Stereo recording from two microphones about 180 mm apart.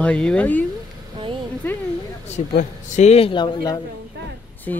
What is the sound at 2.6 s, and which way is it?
A man's voice, 40° left (ahead or behind).